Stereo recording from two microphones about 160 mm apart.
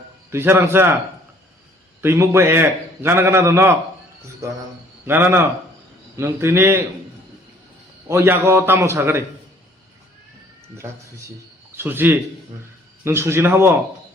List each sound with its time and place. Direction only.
0.3 s a man's voice: 15° right (ahead or behind)
2.0 s a man's voice: 15° right (ahead or behind)
5.0 s a man's voice: 15° right (ahead or behind)
8.0 s a man's voice: 15° right (ahead or behind)
10.8 s a man's voice: 15° right (ahead or behind)